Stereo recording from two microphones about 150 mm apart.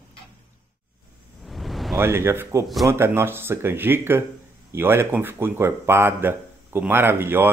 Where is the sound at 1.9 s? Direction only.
15° right (ahead or behind).